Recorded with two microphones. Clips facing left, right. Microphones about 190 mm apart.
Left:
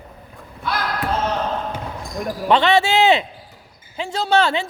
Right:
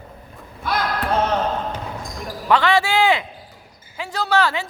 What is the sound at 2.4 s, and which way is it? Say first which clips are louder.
A man's voice: left 2 dB; 25° left (ahead or behind).